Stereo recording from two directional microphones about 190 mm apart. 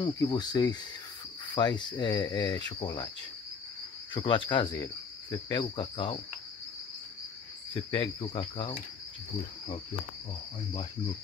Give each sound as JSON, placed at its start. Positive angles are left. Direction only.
{"t": 0.0, "sound": "cricket", "side_deg": 20}
{"t": 4.1, "sound": "cricket", "side_deg": 25}
{"t": 8.2, "sound": "cricket", "side_deg": 30}